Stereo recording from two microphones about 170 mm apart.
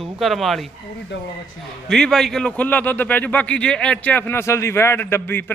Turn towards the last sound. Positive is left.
turn(degrees=10)  # may be behind; listen again after turning